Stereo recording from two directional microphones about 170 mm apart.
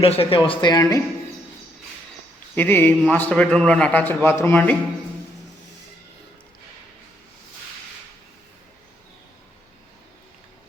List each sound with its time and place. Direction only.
0.0 s speech: 35° left (ahead or behind)
2.6 s a man's voice: 10° left (ahead or behind)